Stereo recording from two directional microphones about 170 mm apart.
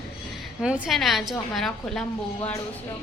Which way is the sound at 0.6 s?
5° right (ahead or behind).